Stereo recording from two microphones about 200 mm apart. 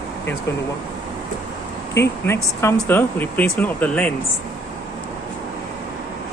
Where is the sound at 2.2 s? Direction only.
15° left (ahead or behind).